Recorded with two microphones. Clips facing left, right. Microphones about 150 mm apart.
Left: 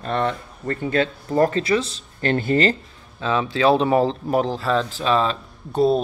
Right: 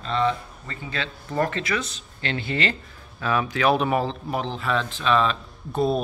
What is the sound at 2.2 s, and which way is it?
Speech, 45° left (ahead or behind).